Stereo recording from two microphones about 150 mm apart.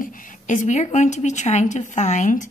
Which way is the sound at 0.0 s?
65° left (ahead or behind).